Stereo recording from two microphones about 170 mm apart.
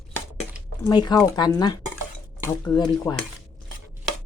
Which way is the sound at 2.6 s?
20° left (ahead or behind).